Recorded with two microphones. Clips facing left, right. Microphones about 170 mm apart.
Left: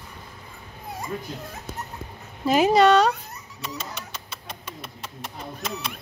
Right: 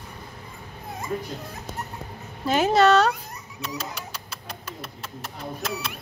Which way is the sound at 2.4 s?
Centre (ahead or behind).